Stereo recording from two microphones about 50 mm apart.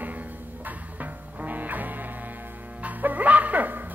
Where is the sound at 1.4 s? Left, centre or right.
Right.